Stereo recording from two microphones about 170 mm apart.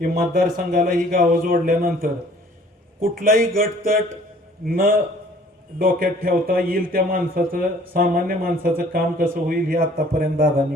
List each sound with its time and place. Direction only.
0.0 s a man's voice: 55° right (ahead or behind)